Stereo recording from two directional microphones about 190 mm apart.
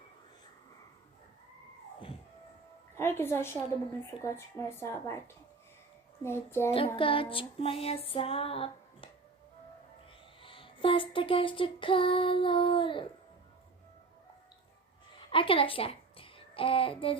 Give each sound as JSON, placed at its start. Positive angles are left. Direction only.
{"t": 2.9, "sound": "a woman's voice", "side_deg": 10}
{"t": 6.2, "sound": "speech", "side_deg": 15}
{"t": 6.7, "sound": "female singing", "side_deg": 30}
{"t": 10.4, "sound": "female singing", "side_deg": 25}
{"t": 15.3, "sound": "a child's voice", "side_deg": 30}